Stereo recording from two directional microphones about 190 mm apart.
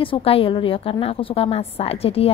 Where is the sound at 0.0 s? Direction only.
30° left (ahead or behind).